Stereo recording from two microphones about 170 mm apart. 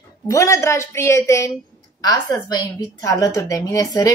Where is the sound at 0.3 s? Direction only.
20° left (ahead or behind).